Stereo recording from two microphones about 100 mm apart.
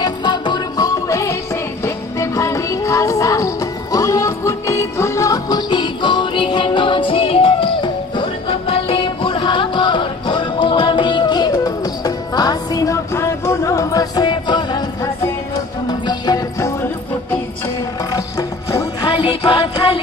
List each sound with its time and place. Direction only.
0.0 s music: 50° left (ahead or behind)
15.9 s music: 45° left (ahead or behind)
18.7 s music: 30° left (ahead or behind)
19.0 s music: 65° left (ahead or behind)